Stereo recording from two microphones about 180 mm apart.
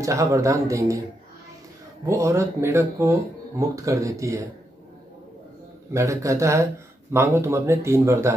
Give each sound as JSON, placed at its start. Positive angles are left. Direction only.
{"t": 0.0, "sound": "speech", "side_deg": -15}
{"t": 2.0, "sound": "speech", "side_deg": -15}
{"t": 5.9, "sound": "speech", "side_deg": -15}